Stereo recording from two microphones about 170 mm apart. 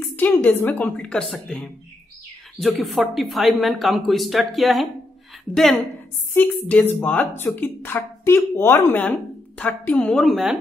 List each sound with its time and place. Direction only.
0.1 s a woman's voice: 10° left (ahead or behind)
6.3 s a woman's voice: 10° left (ahead or behind)